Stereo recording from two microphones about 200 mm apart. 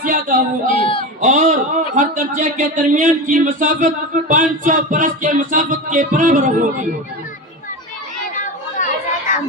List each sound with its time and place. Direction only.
0.0 s speech: 40° right (ahead or behind)
0.7 s a man's voice: 25° left (ahead or behind)
1.2 s speech: 40° right (ahead or behind)
8.4 s children playing: 40° left (ahead or behind)